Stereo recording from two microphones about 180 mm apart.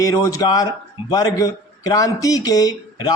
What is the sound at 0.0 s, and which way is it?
A man's voice, 20° left (ahead or behind).